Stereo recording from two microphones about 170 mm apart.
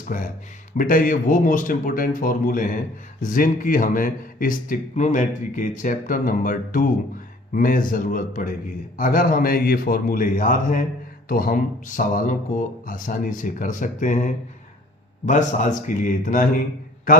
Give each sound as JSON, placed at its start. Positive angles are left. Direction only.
{"t": 0.1, "sound": "speech", "side_deg": 50}